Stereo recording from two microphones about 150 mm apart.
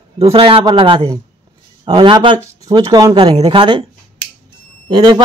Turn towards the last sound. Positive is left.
turn(degrees=-35)  # may be behind; listen again after turning